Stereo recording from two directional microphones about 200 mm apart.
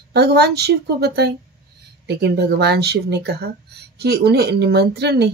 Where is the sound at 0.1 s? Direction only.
55° right (ahead or behind).